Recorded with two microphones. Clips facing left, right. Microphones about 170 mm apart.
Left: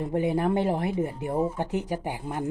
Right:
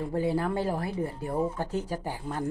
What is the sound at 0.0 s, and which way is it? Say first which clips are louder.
Speech: left 3 dB; 20° left (ahead or behind).